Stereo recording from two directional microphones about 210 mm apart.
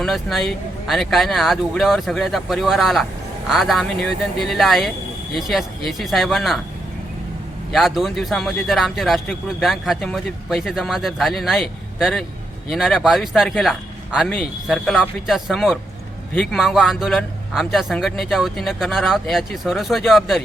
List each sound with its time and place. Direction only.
0.0 s speech: centre (ahead or behind)
7.7 s speech: centre (ahead or behind)